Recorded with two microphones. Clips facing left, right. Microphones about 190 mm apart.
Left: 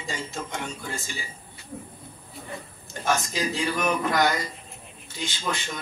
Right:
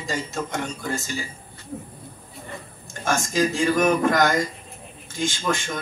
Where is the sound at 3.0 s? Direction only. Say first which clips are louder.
Right 4 dB; 45° right (ahead or behind).